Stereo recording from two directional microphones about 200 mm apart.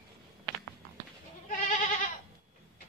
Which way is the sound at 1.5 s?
40° left (ahead or behind).